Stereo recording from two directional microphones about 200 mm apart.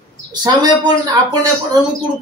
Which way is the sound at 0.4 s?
20° right (ahead or behind).